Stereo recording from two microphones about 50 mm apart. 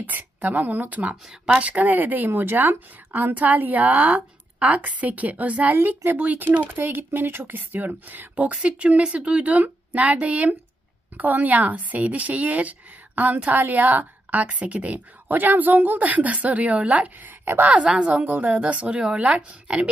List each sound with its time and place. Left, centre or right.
0.0 s speech: right
6.7 s speech: right
8.4 s speech: right
15.3 s speech: right
17.2 s speech: right
17.7 s speech: right